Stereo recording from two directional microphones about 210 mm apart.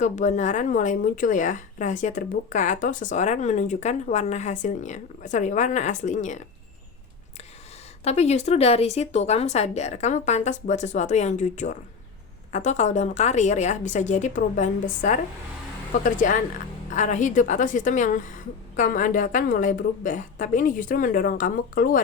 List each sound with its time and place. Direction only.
0.0 s speech: 35° left (ahead or behind)
8.0 s speech: 30° left (ahead or behind)